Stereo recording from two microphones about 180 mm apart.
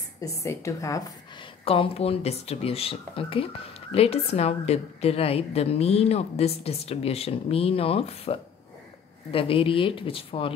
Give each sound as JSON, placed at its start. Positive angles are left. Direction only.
{"t": 0.2, "sound": "a woman's voice", "side_deg": 15}
{"t": 1.6, "sound": "speech", "side_deg": 30}